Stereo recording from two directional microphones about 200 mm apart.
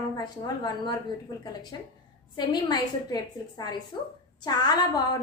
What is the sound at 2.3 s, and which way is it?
A woman's voice, 20° left (ahead or behind).